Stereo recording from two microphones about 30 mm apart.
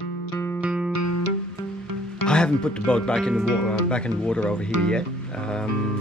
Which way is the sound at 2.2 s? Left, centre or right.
Left.